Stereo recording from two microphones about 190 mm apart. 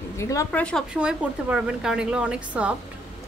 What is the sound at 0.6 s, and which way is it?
Speech, centre (ahead or behind).